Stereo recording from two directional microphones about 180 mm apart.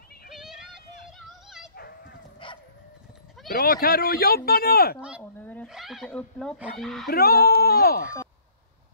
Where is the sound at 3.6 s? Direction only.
55° left (ahead or behind).